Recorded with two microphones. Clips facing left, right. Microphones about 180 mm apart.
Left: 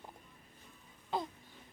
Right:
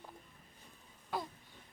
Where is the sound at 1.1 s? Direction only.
20° left (ahead or behind).